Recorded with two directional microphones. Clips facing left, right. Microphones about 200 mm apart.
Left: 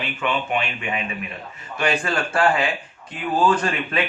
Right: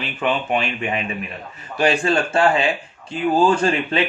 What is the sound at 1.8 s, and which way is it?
Speech, 25° right (ahead or behind).